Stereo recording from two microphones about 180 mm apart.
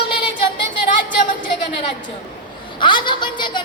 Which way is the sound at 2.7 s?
25° left (ahead or behind).